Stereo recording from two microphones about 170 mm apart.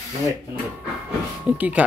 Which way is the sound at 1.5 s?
10° right (ahead or behind).